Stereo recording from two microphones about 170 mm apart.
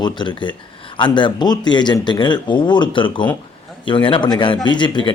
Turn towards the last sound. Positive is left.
turn(degrees=25)  # may be behind; listen again after turning